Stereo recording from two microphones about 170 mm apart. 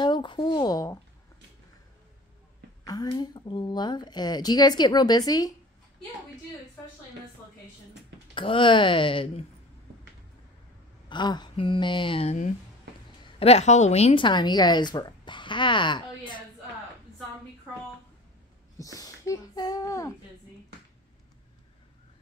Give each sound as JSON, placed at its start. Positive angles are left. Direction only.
{"t": 0.0, "sound": "a sound", "side_deg": 25}
{"t": 2.8, "sound": "a woman's voice", "side_deg": 20}
{"t": 8.4, "sound": "a woman's voice", "side_deg": 30}
{"t": 11.1, "sound": "a woman's voice", "side_deg": 25}
{"t": 18.8, "sound": "speech", "side_deg": 20}